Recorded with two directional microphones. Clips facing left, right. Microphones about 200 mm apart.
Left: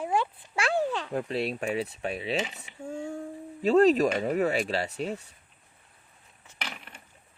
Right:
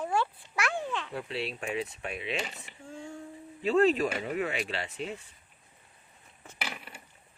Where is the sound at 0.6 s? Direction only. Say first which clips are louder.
Left 5 dB; 35° left (ahead or behind).